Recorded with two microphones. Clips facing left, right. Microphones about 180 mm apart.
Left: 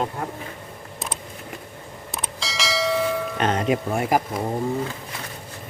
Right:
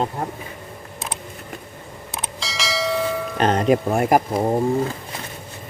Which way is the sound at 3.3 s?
35° right (ahead or behind).